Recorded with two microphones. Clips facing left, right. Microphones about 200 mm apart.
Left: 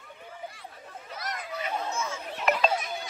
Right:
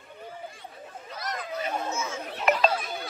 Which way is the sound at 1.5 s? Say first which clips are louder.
Right 2 dB; 45° right (ahead or behind).